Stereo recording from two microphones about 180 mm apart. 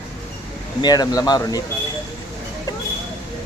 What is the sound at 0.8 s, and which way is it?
Speech, 20° left (ahead or behind).